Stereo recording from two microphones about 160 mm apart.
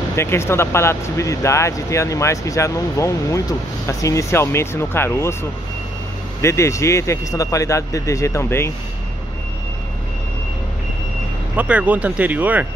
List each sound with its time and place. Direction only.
0.1 s speech: 15° left (ahead or behind)
11.5 s speech: 10° right (ahead or behind)